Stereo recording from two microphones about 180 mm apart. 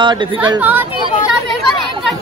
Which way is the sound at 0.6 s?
10° right (ahead or behind).